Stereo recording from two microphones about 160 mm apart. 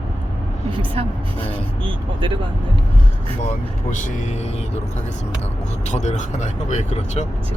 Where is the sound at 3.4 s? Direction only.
50° left (ahead or behind).